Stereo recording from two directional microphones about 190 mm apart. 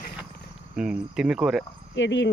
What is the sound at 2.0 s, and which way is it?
Speech, 70° left (ahead or behind).